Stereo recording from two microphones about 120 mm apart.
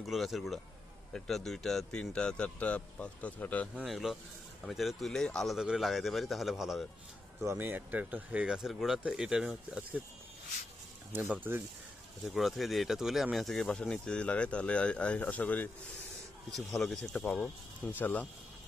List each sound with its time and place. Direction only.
0.0 s speech: centre (ahead or behind)
3.7 s speech: centre (ahead or behind)
7.4 s speech: 15° right (ahead or behind)
11.1 s speech: 15° right (ahead or behind)
12.3 s speech: centre (ahead or behind)
16.7 s speech: 5° left (ahead or behind)